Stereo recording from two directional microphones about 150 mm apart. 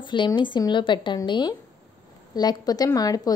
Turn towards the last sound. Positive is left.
turn(degrees=25)  # may be behind; listen again after turning